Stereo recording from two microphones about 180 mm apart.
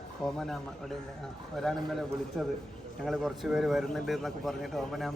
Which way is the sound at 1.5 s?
Centre (ahead or behind).